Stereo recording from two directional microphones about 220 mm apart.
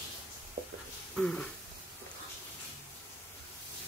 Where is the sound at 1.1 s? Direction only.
5° left (ahead or behind).